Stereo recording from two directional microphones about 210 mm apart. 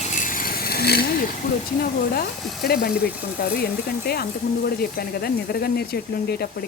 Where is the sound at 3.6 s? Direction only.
45° left (ahead or behind).